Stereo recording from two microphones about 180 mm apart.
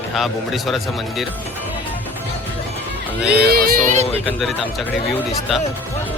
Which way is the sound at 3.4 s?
55° right (ahead or behind).